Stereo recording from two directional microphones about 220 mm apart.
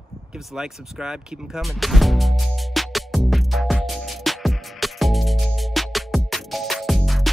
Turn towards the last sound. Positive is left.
turn(degrees=0)  # may be behind; listen again after turning